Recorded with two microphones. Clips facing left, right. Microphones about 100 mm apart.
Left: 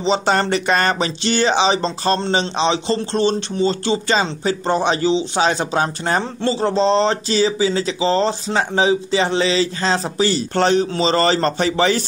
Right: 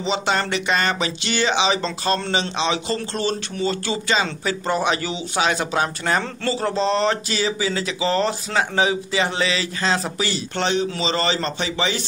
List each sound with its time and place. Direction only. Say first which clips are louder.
0.0 s speech: left 5 dB; 35° left (ahead or behind)